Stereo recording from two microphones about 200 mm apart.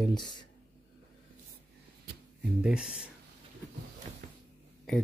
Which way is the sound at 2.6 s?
5° right (ahead or behind).